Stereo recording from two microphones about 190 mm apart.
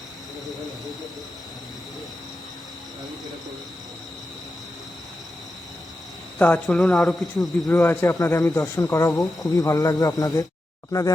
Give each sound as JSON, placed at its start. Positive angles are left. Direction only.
{"t": 6.4, "sound": "speech", "side_deg": 5}
{"t": 7.8, "sound": "speech", "side_deg": 15}